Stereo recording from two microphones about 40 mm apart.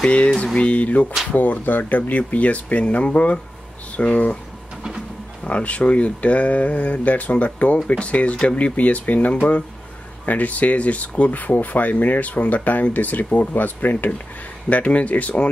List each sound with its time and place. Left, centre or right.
0.0 s speech: left
5.4 s speech: left
8.7 s speech: left
14.7 s speech: left